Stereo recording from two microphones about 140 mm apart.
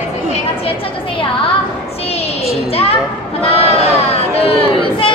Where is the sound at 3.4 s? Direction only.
45° left (ahead or behind).